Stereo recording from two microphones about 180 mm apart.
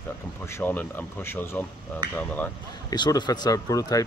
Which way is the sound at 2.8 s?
25° left (ahead or behind).